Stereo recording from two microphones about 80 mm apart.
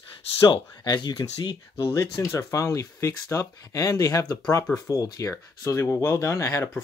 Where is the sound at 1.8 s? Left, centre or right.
Left.